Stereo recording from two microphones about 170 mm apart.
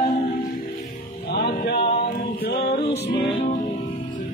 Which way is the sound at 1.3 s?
70° left (ahead or behind).